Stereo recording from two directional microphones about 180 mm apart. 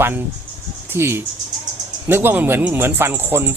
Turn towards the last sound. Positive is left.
turn(degrees=-10)  # may be behind; listen again after turning